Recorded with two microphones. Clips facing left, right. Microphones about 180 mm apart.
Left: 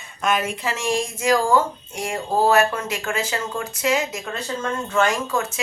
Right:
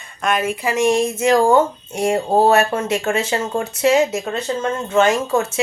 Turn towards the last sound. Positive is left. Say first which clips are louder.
# right 5 dB
turn(degrees=-25)  # may be behind; listen again after turning